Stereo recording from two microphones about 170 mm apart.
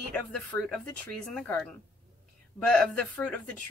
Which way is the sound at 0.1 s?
5° left (ahead or behind).